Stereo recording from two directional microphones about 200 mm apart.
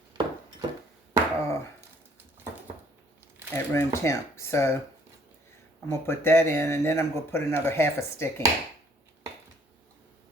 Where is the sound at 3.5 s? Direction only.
15° left (ahead or behind).